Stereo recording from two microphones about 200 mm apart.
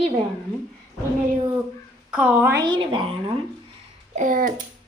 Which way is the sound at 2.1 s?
5° right (ahead or behind).